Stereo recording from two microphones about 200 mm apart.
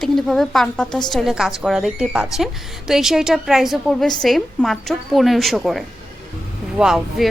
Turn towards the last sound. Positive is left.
turn(degrees=-5)  # may be behind; listen again after turning